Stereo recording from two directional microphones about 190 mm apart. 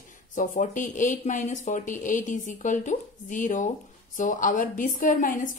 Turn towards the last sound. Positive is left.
turn(degrees=45)  # may be behind; listen again after turning